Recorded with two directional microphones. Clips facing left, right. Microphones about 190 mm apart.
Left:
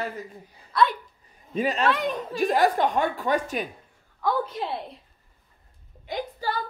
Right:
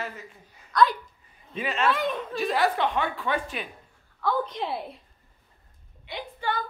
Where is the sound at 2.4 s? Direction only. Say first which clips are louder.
Left 4 dB; 45° left (ahead or behind).